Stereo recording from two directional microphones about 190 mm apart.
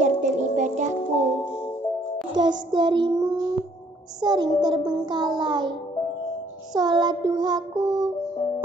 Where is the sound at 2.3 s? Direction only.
20° right (ahead or behind).